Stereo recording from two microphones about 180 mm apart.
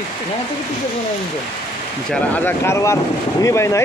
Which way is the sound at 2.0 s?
10° left (ahead or behind).